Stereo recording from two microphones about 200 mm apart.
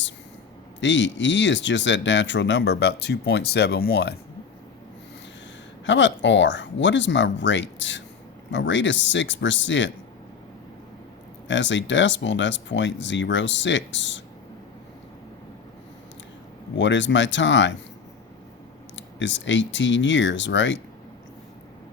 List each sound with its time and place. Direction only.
0.8 s speech: 65° left (ahead or behind)
5.8 s speech: 65° left (ahead or behind)
11.4 s speech: 65° left (ahead or behind)
16.7 s speech: 65° left (ahead or behind)
18.9 s speech: 65° left (ahead or behind)